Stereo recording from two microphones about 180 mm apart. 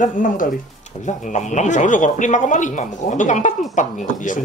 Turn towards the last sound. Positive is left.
turn(degrees=45)  # may be behind; listen again after turning